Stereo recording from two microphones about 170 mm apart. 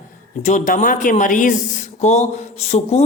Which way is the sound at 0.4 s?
45° left (ahead or behind).